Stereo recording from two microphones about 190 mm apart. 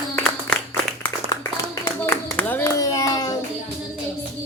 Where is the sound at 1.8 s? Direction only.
10° left (ahead or behind).